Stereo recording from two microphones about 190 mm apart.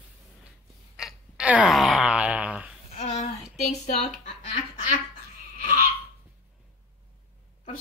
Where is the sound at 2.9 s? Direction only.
35° left (ahead or behind).